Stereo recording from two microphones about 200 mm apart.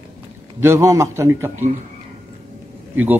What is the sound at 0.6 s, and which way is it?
Speech, 15° right (ahead or behind).